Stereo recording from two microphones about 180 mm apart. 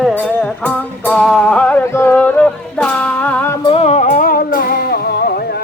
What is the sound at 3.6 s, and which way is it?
Music, 35° left (ahead or behind).